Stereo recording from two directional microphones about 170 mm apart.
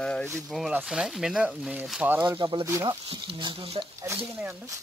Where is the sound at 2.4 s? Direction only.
30° right (ahead or behind).